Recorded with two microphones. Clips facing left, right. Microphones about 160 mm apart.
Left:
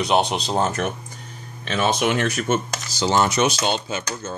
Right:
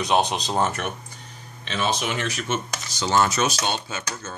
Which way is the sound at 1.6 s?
50° left (ahead or behind).